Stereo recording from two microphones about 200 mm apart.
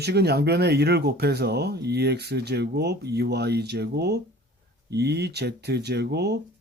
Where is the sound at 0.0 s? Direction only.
55° right (ahead or behind).